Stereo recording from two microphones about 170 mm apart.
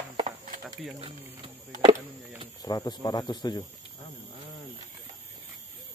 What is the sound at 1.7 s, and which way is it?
Speech, 45° right (ahead or behind).